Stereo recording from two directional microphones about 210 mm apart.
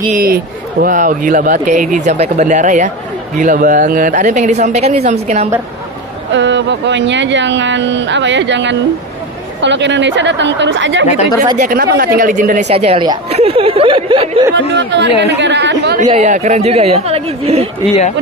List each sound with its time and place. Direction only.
0.1 s speech: 45° right (ahead or behind)
6.3 s speech: 60° right (ahead or behind)
11.5 s speech: 35° right (ahead or behind)
11.8 s a woman's voice: 50° right (ahead or behind); by 14.4 s 25° right (ahead or behind)
14.8 s speech: 55° right (ahead or behind)
16.1 s a woman's voice: 35° right (ahead or behind)